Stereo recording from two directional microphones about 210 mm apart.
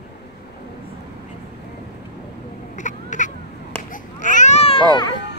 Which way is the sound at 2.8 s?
35° left (ahead or behind).